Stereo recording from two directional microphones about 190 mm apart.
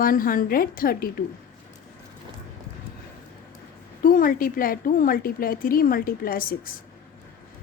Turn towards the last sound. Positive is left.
turn(degrees=45)  # may be behind; listen again after turning